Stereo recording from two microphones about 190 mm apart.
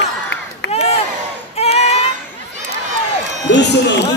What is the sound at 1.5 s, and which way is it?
Child singing, 35° left (ahead or behind).